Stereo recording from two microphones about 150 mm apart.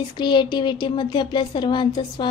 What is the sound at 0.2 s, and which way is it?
A woman's voice, 30° left (ahead or behind).